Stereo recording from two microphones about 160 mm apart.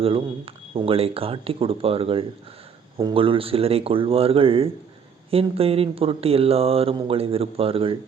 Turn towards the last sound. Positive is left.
turn(degrees=-35)  # may be behind; listen again after turning